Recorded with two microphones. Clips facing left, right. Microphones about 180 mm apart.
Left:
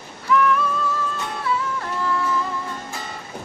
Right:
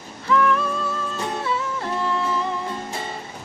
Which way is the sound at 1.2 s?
25° right (ahead or behind).